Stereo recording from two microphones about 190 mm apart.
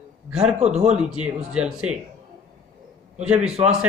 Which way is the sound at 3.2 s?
5° right (ahead or behind).